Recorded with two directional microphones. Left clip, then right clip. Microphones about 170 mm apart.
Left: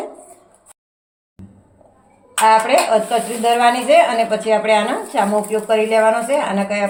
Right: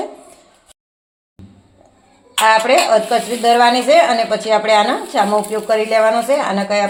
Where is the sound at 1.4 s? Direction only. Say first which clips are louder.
Even; centre (ahead or behind).